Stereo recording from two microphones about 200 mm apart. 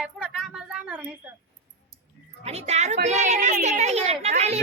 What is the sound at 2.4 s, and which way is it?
A woman's voice, 30° right (ahead or behind).